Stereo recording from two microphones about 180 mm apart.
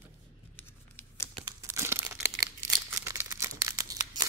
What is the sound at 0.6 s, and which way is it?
Tearing, 15° left (ahead or behind).